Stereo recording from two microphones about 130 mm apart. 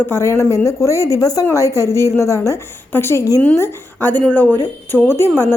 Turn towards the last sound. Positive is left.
turn(degrees=15)  # may be behind; listen again after turning